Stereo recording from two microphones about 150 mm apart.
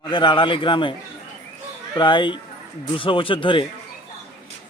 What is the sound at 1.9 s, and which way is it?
A man's voice, 30° left (ahead or behind).